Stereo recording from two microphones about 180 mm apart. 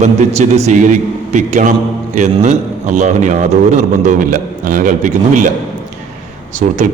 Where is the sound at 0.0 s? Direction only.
35° right (ahead or behind).